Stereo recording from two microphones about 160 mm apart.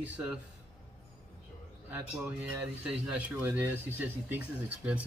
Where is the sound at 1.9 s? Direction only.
10° right (ahead or behind).